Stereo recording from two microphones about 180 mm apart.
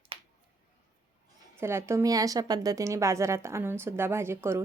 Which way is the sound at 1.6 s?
15° right (ahead or behind).